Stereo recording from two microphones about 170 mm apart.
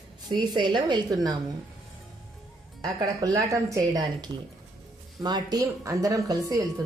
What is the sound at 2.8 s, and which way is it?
Speech, 20° right (ahead or behind).